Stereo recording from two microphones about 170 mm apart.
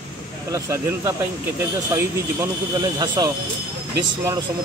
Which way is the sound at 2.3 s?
20° right (ahead or behind).